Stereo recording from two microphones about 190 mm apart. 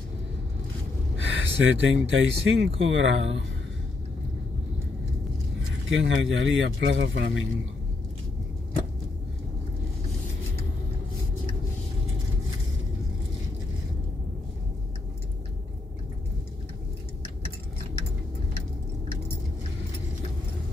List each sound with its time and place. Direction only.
1.1 s speech: 90° right
5.9 s speech: 85° right; by 7.4 s 70° right (ahead or behind)